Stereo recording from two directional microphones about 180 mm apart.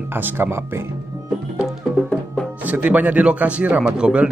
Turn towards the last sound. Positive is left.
turn(degrees=-5)  # may be behind; listen again after turning